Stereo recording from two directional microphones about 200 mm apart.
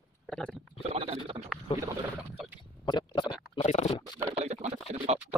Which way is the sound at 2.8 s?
25° left (ahead or behind).